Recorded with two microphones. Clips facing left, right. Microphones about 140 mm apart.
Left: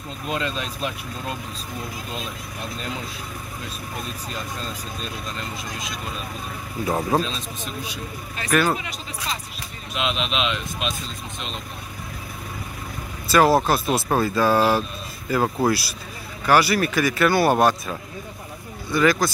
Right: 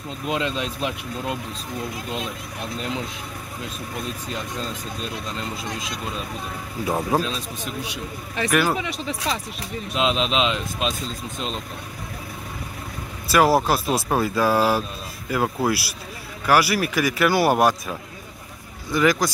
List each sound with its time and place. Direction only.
0.3 s speech: 15° right (ahead or behind)
5.6 s speech: 30° right (ahead or behind)
6.9 s speech: 5° right (ahead or behind)
9.9 s speech: 30° right (ahead or behind)
13.3 s speech: 5° right (ahead or behind)